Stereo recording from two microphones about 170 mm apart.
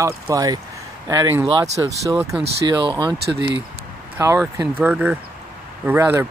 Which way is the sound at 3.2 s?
80° right.